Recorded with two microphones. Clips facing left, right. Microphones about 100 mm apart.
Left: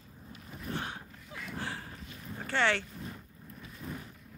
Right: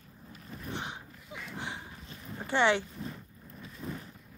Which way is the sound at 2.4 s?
15° right (ahead or behind).